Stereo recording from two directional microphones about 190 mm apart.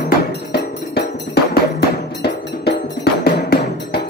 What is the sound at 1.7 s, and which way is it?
Music, 60° left (ahead or behind).